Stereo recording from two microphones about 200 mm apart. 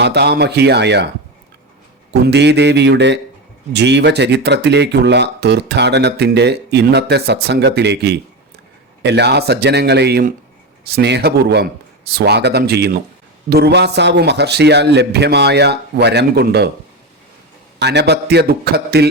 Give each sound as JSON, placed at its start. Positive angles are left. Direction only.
{"t": 0.0, "sound": "speech", "side_deg": -55}
{"t": 2.2, "sound": "speech", "side_deg": -60}
{"t": 17.7, "sound": "speech", "side_deg": -55}